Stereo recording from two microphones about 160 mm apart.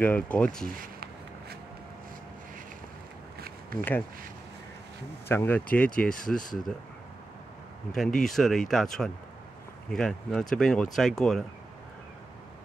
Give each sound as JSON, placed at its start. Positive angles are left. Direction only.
{"t": 0.0, "sound": "speech", "side_deg": 10}
{"t": 3.3, "sound": "a sound", "side_deg": -70}
{"t": 5.3, "sound": "speech", "side_deg": 15}
{"t": 6.2, "sound": "speech", "side_deg": 55}
{"t": 7.9, "sound": "speech", "side_deg": 0}